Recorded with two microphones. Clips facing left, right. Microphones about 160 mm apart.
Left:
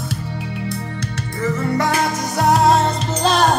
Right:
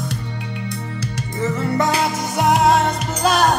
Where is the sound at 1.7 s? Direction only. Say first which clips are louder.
Even; 25° right (ahead or behind).